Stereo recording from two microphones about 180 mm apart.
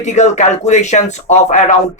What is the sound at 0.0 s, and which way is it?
Speech, 40° left (ahead or behind).